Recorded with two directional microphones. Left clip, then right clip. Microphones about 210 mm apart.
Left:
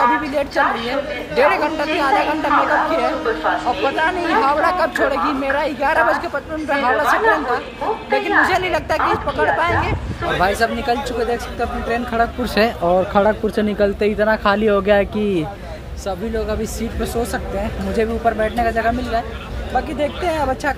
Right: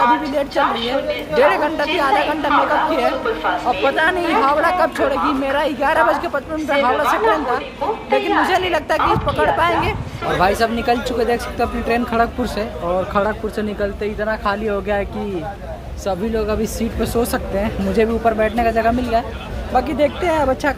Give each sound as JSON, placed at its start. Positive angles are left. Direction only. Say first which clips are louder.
{"t": 0.0, "sound": "speech", "louder": "right 1 dB", "side_deg": -10}
{"t": 12.8, "sound": "speech", "louder": "left 1 dB", "side_deg": 20}
{"t": 16.1, "sound": "speech", "louder": "right 2 dB", "side_deg": -15}